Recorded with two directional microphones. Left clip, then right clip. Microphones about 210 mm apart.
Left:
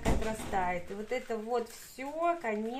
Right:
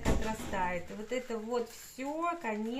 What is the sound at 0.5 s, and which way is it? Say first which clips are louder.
A woman's voice: left 3 dB; 45° left (ahead or behind).